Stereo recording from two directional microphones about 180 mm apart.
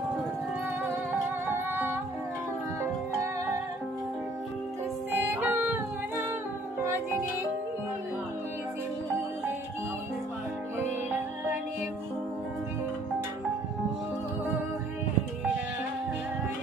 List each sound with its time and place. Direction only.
1.7 s music: 10° right (ahead or behind)
5.4 s music: 10° right (ahead or behind)